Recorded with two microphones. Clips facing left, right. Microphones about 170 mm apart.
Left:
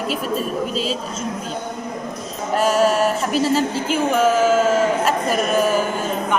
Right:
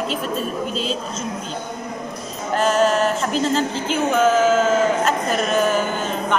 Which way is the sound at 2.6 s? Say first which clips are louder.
Left 1 dB; 5° left (ahead or behind).